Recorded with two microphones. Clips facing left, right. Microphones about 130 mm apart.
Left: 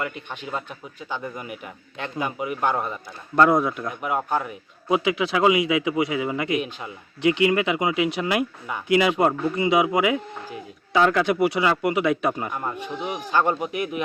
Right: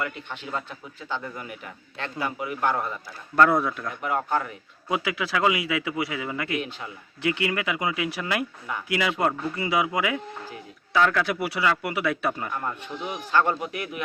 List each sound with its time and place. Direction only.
0.0 s a man's voice: 20° left (ahead or behind)